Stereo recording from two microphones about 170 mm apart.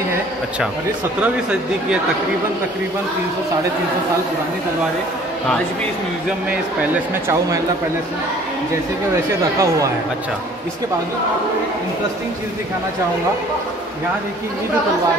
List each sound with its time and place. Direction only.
1.2 s speech: 5° right (ahead or behind)
7.2 s speech: 20° right (ahead or behind)
9.1 s speech: 20° right (ahead or behind)